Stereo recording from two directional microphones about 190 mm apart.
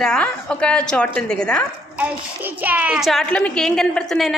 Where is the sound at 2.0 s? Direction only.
10° right (ahead or behind).